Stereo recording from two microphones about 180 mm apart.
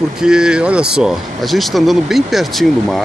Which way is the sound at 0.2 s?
5° right (ahead or behind).